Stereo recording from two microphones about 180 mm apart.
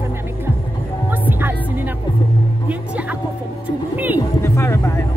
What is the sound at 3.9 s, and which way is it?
Speech, 10° right (ahead or behind).